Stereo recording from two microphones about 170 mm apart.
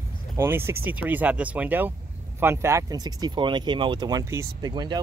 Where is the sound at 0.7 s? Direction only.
10° right (ahead or behind).